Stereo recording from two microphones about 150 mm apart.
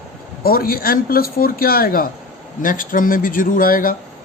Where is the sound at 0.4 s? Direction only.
75° left (ahead or behind).